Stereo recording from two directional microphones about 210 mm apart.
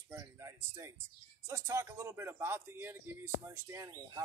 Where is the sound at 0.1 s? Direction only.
15° right (ahead or behind).